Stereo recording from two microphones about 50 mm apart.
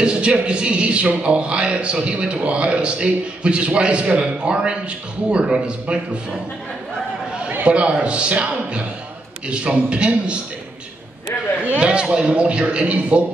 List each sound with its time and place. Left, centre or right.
0.0 s a man's voice: centre
7.6 s a man's voice: right
11.6 s a man's voice: right